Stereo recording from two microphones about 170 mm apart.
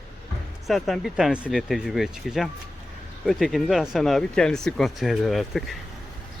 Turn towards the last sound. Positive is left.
turn(degrees=0)  # may be behind; listen again after turning